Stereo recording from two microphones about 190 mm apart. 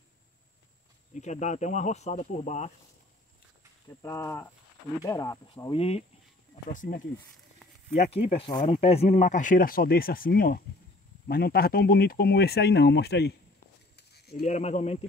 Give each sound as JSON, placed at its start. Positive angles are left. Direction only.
{"t": 1.1, "sound": "speech", "side_deg": 40}
{"t": 4.0, "sound": "speech", "side_deg": 15}
{"t": 5.8, "sound": "speech", "side_deg": 30}
{"t": 6.5, "sound": "speech", "side_deg": 45}
{"t": 13.9, "sound": "a sound", "side_deg": 55}
{"t": 14.4, "sound": "speech", "side_deg": 40}